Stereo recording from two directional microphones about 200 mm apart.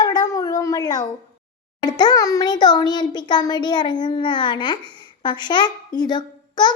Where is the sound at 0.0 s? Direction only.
20° left (ahead or behind).